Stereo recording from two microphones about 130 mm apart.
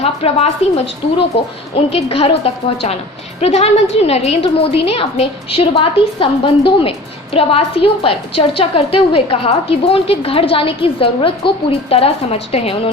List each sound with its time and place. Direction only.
0.0 s a woman's voice: 50° left (ahead or behind)
1.7 s a woman's voice: 50° left (ahead or behind)